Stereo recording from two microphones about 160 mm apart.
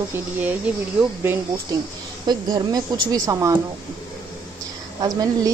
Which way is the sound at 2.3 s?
25° right (ahead or behind).